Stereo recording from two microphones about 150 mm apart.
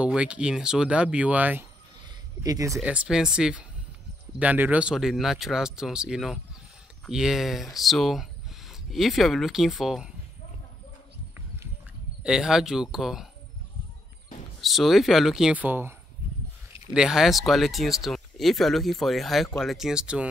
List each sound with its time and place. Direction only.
0.0 s speech: 5° right (ahead or behind)
2.4 s speech: 25° right (ahead or behind)
2.7 s speech: 5° right (ahead or behind)
12.2 s speech: 5° right (ahead or behind)
14.6 s speech: centre (ahead or behind)
16.9 s speech: 5° right (ahead or behind)